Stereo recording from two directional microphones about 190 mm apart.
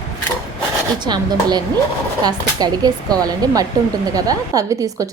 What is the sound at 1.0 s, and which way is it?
A woman's voice, 20° right (ahead or behind).